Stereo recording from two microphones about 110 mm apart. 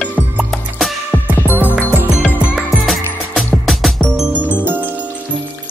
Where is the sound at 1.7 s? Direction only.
15° left (ahead or behind).